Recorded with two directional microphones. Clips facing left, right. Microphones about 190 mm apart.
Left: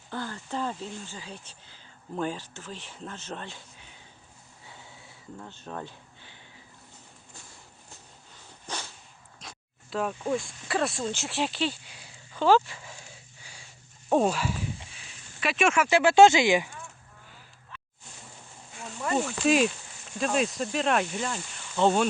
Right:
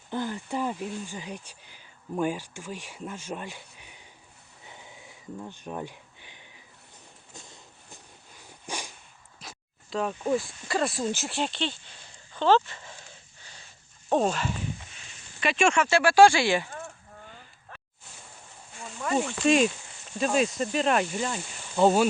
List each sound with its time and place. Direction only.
0.1 s speech: 15° right (ahead or behind)
4.6 s a sound: 20° right (ahead or behind)
8.6 s dog: 10° right (ahead or behind)
9.4 s speech: centre (ahead or behind)
13.4 s dog: 10° left (ahead or behind)
14.1 s speech: 5° left (ahead or behind)
15.9 s speech: 20° left (ahead or behind)
16.7 s a sound: 55° right (ahead or behind)
18.8 s speech: centre (ahead or behind)